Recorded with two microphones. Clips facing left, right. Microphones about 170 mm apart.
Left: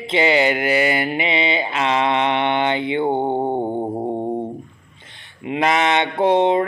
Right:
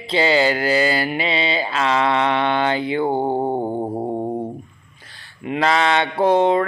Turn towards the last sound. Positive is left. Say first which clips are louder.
# even
turn(degrees=20)  # may be behind; listen again after turning